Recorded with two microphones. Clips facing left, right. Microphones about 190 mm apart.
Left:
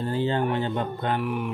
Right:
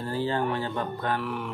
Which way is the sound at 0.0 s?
20° left (ahead or behind).